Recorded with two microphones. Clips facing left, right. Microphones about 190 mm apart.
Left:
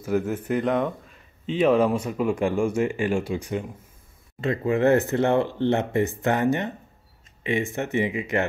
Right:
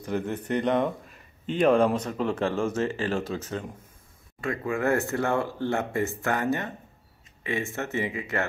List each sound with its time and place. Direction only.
0.0 s speech: 5° left (ahead or behind)